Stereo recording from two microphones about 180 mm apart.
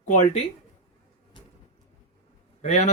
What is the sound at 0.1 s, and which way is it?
Speech, 40° left (ahead or behind).